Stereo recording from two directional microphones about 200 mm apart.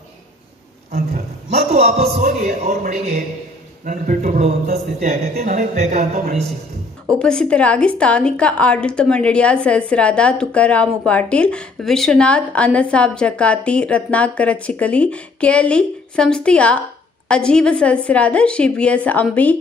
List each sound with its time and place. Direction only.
0.9 s a man's voice: 35° right (ahead or behind)
7.2 s a woman's voice: 5° left (ahead or behind)